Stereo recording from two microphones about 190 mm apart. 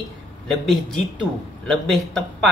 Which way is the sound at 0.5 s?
Centre (ahead or behind).